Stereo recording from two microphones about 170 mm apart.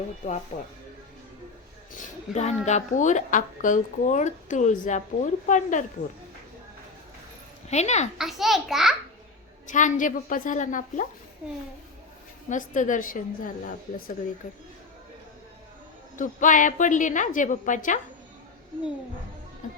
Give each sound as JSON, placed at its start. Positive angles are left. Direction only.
{"t": 0.2, "sound": "a woman's voice", "side_deg": 50}
{"t": 2.0, "sound": "a woman's voice", "side_deg": 40}
{"t": 7.7, "sound": "speech", "side_deg": 40}
{"t": 8.2, "sound": "a child's voice", "side_deg": 0}
{"t": 9.6, "sound": "a woman's voice", "side_deg": 45}
{"t": 12.5, "sound": "a woman's voice", "side_deg": 50}
{"t": 16.1, "sound": "a woman's voice", "side_deg": 50}